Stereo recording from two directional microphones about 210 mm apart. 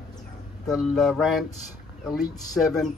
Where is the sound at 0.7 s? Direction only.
Centre (ahead or behind).